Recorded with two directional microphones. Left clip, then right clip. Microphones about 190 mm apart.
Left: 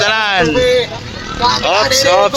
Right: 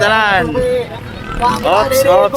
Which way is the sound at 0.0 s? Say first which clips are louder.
Right 1 dB; 15° left (ahead or behind).